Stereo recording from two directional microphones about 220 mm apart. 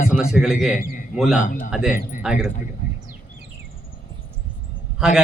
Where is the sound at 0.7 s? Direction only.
40° left (ahead or behind).